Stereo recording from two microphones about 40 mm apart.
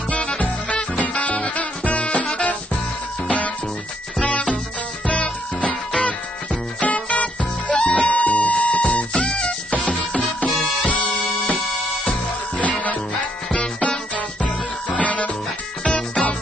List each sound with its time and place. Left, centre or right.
0.9 s music: left
3.3 s music: left
5.0 s music: left
5.6 s music: centre
5.9 s music: left
10.8 s bagpipes: left
11.4 s music: left
12.1 s music: left
13.5 s music: left
15.0 s music: left
16.2 s music: centre